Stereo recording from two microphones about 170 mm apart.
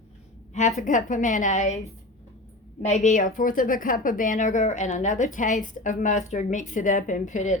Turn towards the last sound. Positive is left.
turn(degrees=45)  # may be behind; listen again after turning